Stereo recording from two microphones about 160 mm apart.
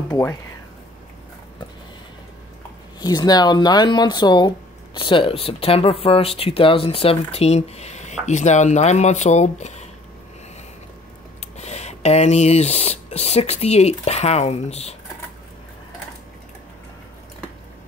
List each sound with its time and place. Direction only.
0.1 s speech: 20° left (ahead or behind)
3.0 s speech: 25° left (ahead or behind); by 9.8 s 45° left (ahead or behind)
11.5 s speech: 45° left (ahead or behind)